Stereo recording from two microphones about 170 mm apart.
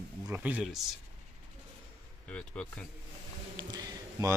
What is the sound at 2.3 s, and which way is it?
Speech, 10° left (ahead or behind).